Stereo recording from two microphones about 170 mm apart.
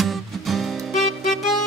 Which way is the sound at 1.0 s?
50° left (ahead or behind).